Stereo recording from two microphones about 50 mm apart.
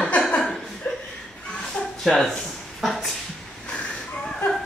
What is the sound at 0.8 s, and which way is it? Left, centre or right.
Chuckle, left.